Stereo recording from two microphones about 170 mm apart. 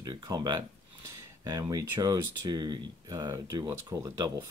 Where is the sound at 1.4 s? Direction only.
20° right (ahead or behind).